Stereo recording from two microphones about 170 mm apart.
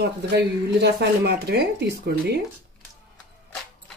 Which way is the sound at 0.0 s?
80° right.